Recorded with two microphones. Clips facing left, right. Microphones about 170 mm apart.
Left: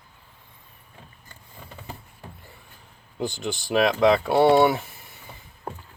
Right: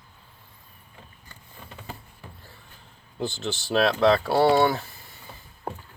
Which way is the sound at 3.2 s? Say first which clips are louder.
Left 1 dB; 15° left (ahead or behind).